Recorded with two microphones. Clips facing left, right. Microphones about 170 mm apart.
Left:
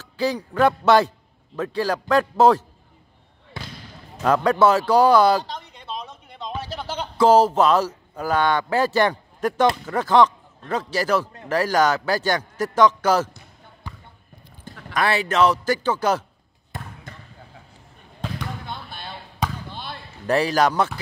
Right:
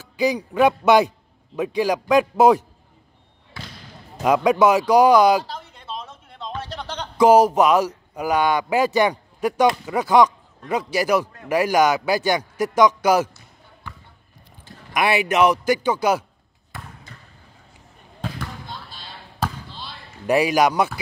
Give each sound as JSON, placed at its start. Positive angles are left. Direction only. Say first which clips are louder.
{"t": 0.2, "sound": "a man's voice", "louder": "right 2 dB", "side_deg": -15}
{"t": 4.2, "sound": "a sound", "louder": "right 1 dB", "side_deg": -15}
{"t": 7.2, "sound": "a man's voice", "louder": "right 2 dB", "side_deg": -15}
{"t": 15.0, "sound": "a man's voice", "louder": "right 1 dB", "side_deg": -15}
{"t": 17.1, "sound": "basketball bounce", "louder": "left 4 dB", "side_deg": 55}
{"t": 18.7, "sound": "basketball bounce", "louder": "left 3 dB", "side_deg": 60}
{"t": 20.2, "sound": "a man's voice", "louder": "right 2 dB", "side_deg": -15}